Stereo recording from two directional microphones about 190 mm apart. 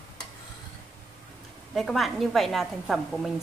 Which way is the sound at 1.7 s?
Centre (ahead or behind).